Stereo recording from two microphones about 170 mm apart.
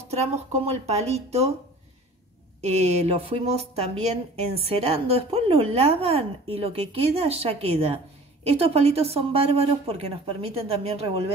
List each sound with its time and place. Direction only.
0.1 s a woman's voice: 40° right (ahead or behind)
2.6 s a woman's voice: 40° right (ahead or behind)